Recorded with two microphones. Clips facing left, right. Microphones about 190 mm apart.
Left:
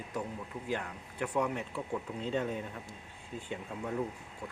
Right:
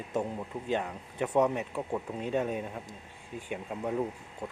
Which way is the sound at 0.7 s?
20° right (ahead or behind).